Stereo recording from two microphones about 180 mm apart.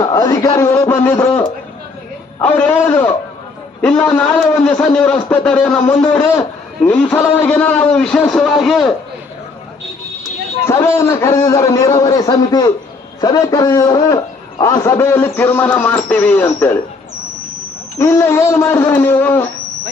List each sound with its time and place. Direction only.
0.0 s a man's voice: 20° left (ahead or behind)
2.4 s a man's voice: 10° left (ahead or behind)
10.7 s a man's voice: 15° left (ahead or behind)
17.9 s a man's voice: 15° left (ahead or behind)